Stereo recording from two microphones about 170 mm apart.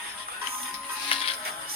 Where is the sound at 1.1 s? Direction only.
30° left (ahead or behind).